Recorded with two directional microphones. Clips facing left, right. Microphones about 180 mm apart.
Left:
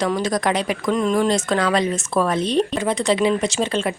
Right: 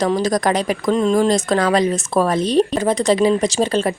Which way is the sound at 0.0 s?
40° right (ahead or behind).